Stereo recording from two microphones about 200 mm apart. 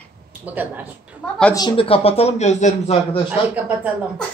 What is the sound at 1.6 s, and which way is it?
A man's voice, 25° left (ahead or behind).